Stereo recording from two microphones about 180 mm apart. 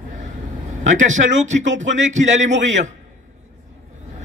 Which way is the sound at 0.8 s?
45° right (ahead or behind).